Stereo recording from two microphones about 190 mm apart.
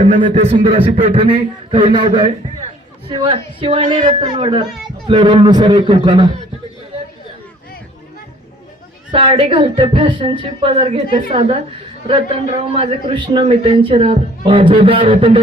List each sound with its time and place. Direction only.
0.3 s a man's voice: 40° right (ahead or behind)
9.1 s a man's voice: 30° right (ahead or behind)